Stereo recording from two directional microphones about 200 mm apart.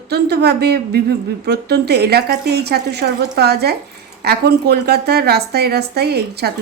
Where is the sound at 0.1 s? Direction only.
55° right (ahead or behind).